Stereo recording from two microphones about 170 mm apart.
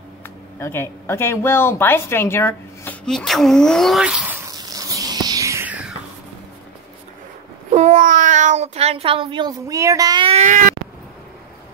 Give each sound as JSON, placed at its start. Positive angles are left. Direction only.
{"t": 0.6, "sound": "speech", "side_deg": 15}
{"t": 3.1, "sound": "a sound", "side_deg": 0}
{"t": 7.7, "sound": "speech", "side_deg": -45}